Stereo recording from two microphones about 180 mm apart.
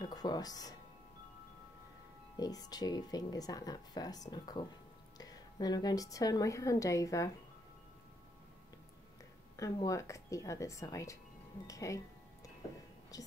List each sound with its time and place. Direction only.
0.0 s speech: 20° left (ahead or behind)
2.3 s a woman's voice: 20° left (ahead or behind)
9.6 s speech: 20° left (ahead or behind)
13.1 s speech: 20° left (ahead or behind)